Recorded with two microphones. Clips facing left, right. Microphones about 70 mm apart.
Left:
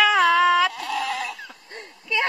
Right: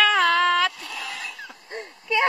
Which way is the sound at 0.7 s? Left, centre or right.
Left.